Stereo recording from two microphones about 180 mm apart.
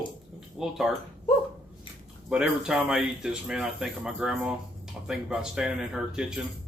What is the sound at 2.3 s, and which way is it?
Speech, 5° right (ahead or behind).